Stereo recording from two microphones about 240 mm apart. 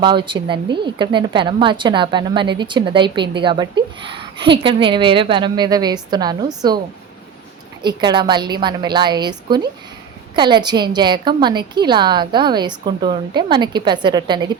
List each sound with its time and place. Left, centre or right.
0.0 s a woman's voice: centre
7.8 s a woman's voice: centre